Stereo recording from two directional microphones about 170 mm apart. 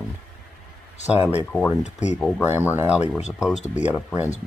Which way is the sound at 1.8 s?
45° left (ahead or behind).